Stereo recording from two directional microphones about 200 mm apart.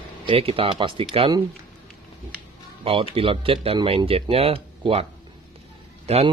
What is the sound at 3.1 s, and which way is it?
Speech, 25° right (ahead or behind).